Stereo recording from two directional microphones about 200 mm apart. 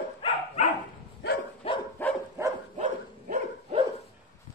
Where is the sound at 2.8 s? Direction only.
35° right (ahead or behind).